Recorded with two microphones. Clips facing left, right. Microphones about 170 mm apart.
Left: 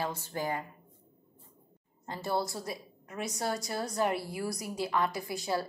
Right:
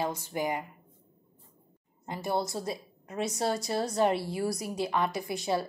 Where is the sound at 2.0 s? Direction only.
15° right (ahead or behind).